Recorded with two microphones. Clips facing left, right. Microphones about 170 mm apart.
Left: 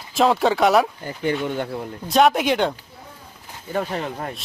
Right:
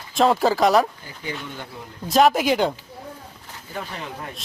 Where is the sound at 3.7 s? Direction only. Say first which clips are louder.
Left 8 dB; 50° left (ahead or behind).